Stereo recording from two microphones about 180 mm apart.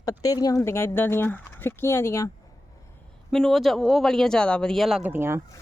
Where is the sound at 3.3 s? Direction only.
Centre (ahead or behind).